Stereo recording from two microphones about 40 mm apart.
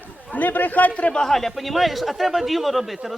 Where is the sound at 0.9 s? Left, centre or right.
Left.